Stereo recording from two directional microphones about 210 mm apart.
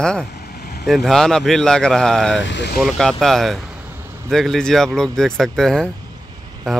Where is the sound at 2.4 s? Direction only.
55° left (ahead or behind).